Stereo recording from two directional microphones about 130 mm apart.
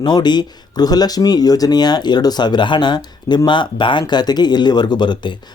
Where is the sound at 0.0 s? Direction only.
35° left (ahead or behind).